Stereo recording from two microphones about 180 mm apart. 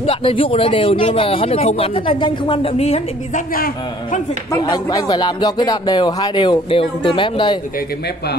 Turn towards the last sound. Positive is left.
turn(degrees=25)  # may be behind; listen again after turning